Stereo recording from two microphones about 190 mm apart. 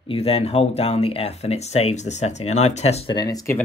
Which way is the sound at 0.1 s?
30° left (ahead or behind).